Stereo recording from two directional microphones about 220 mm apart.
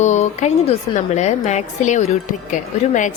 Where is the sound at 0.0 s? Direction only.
30° left (ahead or behind).